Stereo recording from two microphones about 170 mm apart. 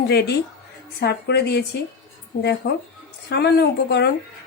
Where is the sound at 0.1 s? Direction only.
75° left (ahead or behind).